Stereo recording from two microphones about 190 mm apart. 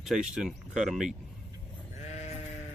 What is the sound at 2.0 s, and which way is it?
Sheep, 35° left (ahead or behind).